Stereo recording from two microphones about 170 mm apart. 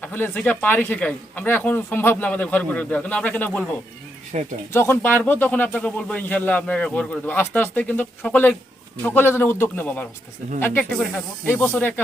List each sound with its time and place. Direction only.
0.0 s speech: 10° left (ahead or behind)
4.3 s speech: 45° right (ahead or behind)
4.7 s speech: 15° left (ahead or behind)